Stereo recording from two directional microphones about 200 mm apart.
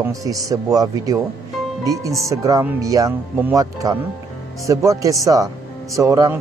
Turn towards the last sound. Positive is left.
turn(degrees=-15)  # may be behind; listen again after turning